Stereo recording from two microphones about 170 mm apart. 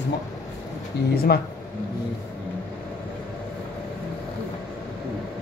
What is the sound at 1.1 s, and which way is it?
Speech, 65° left (ahead or behind).